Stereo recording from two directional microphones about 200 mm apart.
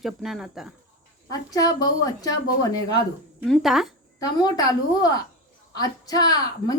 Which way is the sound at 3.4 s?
Centre (ahead or behind).